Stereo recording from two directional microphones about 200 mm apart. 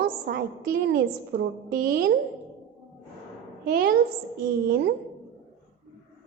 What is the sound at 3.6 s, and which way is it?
Speech, 50° right (ahead or behind).